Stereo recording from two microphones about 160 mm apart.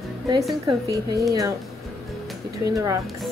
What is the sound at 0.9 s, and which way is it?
Speech, 20° right (ahead or behind).